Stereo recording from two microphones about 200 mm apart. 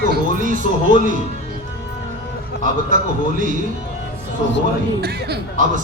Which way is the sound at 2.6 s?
40° right (ahead or behind).